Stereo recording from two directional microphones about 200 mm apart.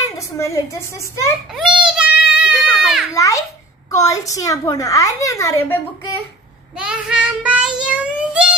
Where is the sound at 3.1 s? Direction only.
15° left (ahead or behind).